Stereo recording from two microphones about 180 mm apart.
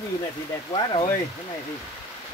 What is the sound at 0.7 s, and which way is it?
Speech, 30° left (ahead or behind).